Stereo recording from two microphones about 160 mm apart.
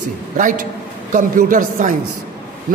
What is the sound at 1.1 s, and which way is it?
Speech, 55° right (ahead or behind).